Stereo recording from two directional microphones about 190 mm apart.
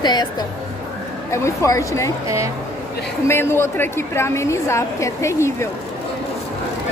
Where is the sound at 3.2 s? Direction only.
10° left (ahead or behind).